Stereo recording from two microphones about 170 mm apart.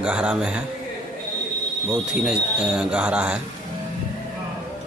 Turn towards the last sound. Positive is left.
turn(degrees=-5)  # may be behind; listen again after turning